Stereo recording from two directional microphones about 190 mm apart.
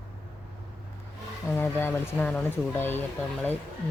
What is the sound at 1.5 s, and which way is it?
Speech, 10° left (ahead or behind).